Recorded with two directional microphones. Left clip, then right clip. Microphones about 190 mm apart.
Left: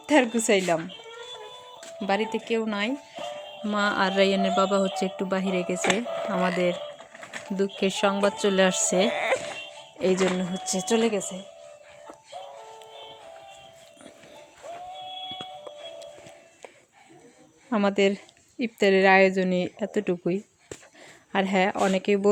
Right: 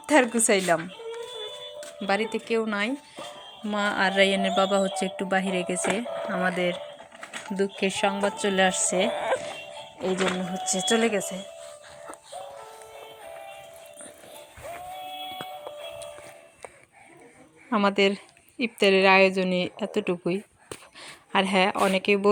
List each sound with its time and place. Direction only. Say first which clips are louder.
0.0 s a woman's voice: right 1 dB; 10° left (ahead or behind)
2.0 s a woman's voice: even; 20° left (ahead or behind)
7.8 s speech: left 2 dB; 25° left (ahead or behind)
10.0 s speech: left 3 dB; 40° left (ahead or behind)
10.7 s speech: right 1 dB; 30° left (ahead or behind)
17.7 s a woman's voice: right 1 dB; 15° left (ahead or behind)